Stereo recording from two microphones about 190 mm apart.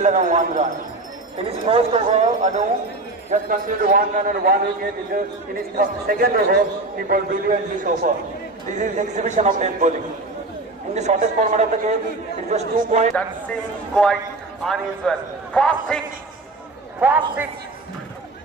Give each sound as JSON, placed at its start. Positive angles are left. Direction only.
{"t": 0.0, "sound": "speech", "side_deg": -40}
{"t": 3.3, "sound": "a man's voice", "side_deg": -45}
{"t": 11.0, "sound": "speech", "side_deg": -40}
{"t": 14.7, "sound": "a man's voice", "side_deg": 5}
{"t": 17.0, "sound": "a man's voice", "side_deg": -10}